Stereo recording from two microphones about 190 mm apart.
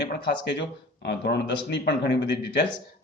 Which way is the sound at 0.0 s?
65° left (ahead or behind).